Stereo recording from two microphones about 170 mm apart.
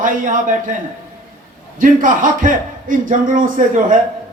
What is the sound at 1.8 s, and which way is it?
A man's voice, 50° right (ahead or behind).